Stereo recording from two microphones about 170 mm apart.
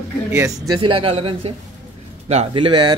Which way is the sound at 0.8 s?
30° right (ahead or behind).